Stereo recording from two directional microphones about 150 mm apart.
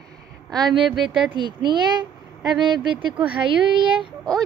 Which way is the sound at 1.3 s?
30° right (ahead or behind).